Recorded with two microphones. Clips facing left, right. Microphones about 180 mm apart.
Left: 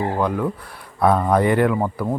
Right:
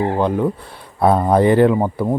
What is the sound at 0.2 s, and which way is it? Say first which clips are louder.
Speech: right 4 dB; 25° right (ahead or behind).